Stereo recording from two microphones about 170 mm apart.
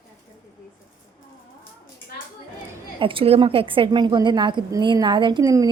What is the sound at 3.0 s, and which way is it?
A woman's voice, 30° right (ahead or behind).